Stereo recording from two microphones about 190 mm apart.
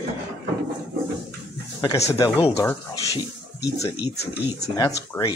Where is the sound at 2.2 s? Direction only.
15° left (ahead or behind).